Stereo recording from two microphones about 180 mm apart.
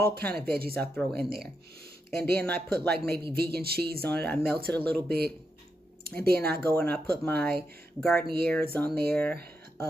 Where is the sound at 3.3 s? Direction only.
60° right (ahead or behind).